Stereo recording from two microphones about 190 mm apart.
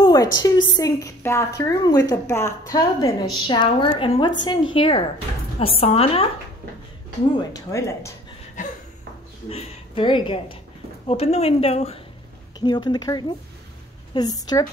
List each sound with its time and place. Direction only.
0.0 s a sound: 20° left (ahead or behind)
0.7 s a woman's voice: 20° left (ahead or behind)
7.3 s a woman's voice: 15° left (ahead or behind)
9.5 s a woman's voice: 30° left (ahead or behind)
12.5 s a woman's voice: 20° left (ahead or behind)